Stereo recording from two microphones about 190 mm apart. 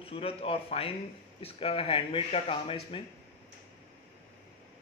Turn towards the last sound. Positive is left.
turn(degrees=30)  # may be behind; listen again after turning